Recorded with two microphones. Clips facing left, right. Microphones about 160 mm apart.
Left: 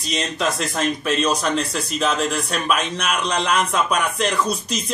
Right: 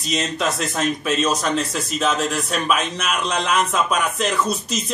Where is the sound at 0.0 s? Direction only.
Centre (ahead or behind).